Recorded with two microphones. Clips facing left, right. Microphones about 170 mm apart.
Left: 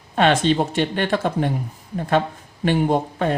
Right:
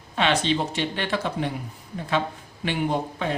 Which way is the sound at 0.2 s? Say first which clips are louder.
Left 6 dB; 50° left (ahead or behind).